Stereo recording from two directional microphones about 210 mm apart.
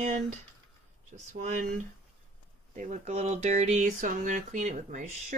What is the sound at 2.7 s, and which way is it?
Speech, 35° right (ahead or behind).